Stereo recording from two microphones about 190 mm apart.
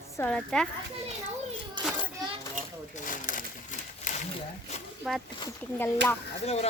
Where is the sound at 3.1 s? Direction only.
45° left (ahead or behind).